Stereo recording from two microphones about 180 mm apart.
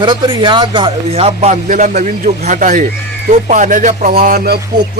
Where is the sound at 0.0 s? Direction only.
25° right (ahead or behind).